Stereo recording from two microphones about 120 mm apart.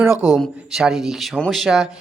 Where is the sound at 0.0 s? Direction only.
20° right (ahead or behind).